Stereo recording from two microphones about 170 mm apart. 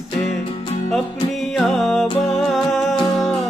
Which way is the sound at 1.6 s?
Centre (ahead or behind).